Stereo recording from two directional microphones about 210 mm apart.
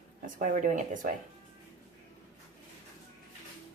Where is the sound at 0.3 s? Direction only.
35° right (ahead or behind).